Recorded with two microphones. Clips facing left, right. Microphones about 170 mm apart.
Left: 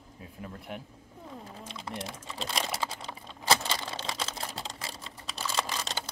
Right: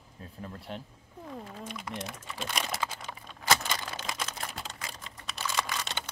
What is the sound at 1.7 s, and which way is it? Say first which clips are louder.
Typing: left 2 dB; 30° left (ahead or behind).